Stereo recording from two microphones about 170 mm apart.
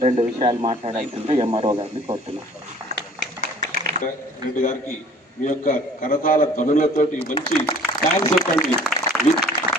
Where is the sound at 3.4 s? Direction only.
55° right (ahead or behind).